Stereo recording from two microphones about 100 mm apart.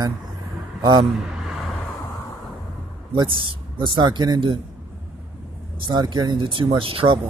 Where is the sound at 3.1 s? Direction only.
55° right (ahead or behind).